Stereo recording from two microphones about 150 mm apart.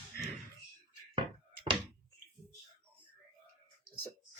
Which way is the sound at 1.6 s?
35° right (ahead or behind).